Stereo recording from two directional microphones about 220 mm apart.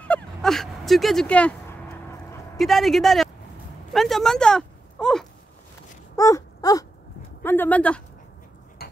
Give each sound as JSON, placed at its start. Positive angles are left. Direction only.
{"t": 0.0, "sound": "a sound", "side_deg": 5}
{"t": 2.6, "sound": "speech", "side_deg": 0}
{"t": 6.1, "sound": "wail", "side_deg": 15}
{"t": 7.4, "sound": "speech", "side_deg": 10}